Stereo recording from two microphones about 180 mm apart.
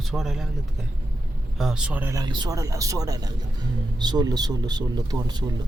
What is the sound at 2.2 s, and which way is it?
A man's voice, 25° right (ahead or behind).